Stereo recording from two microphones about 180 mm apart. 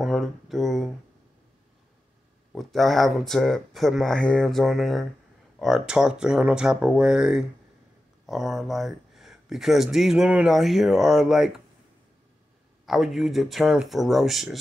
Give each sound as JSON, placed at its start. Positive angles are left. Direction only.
{"t": 0.0, "sound": "a sound", "side_deg": 0}
{"t": 2.5, "sound": "speech", "side_deg": 0}
{"t": 12.8, "sound": "speech", "side_deg": 0}